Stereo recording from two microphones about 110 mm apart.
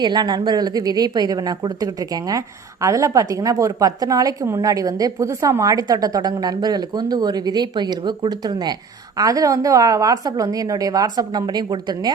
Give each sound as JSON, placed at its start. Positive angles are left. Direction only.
{"t": 0.0, "sound": "a woman's voice", "side_deg": -40}